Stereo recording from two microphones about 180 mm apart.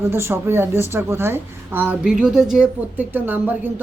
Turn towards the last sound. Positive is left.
turn(degrees=-10)  # may be behind; listen again after turning